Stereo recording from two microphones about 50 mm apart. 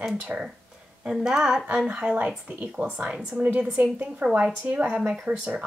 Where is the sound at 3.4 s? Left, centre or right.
Right.